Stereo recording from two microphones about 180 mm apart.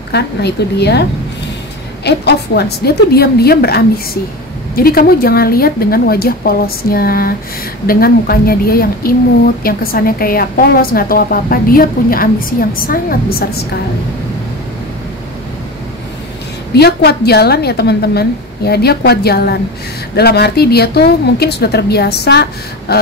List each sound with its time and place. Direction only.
0.1 s a woman's voice: 65° left (ahead or behind)
2.0 s a woman's voice: 65° left (ahead or behind)
16.7 s a woman's voice: 65° left (ahead or behind)